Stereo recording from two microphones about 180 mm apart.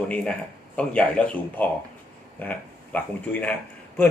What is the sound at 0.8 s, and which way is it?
Speech, 5° left (ahead or behind).